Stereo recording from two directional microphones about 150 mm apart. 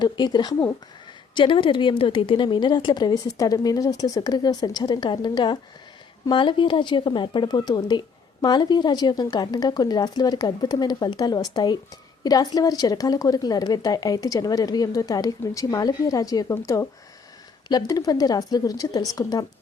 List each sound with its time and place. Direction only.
0.0 s speech: 30° left (ahead or behind)